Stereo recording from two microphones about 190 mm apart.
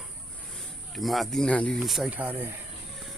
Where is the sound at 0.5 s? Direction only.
Centre (ahead or behind).